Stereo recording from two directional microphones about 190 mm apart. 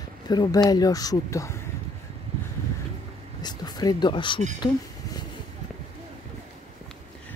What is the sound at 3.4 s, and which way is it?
Speech, 20° left (ahead or behind).